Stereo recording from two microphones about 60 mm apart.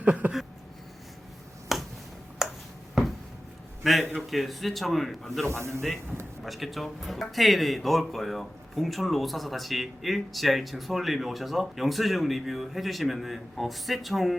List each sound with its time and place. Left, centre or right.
0.0 s a sound: right
1.7 s finger snapping: centre
2.4 s a sound: centre
4.1 s speech: centre
5.5 s speech: right
6.4 s speech: centre